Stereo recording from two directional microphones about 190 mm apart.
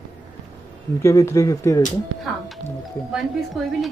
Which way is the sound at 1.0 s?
15° left (ahead or behind).